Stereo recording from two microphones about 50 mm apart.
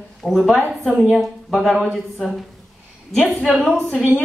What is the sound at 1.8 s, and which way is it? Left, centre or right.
Speech, centre.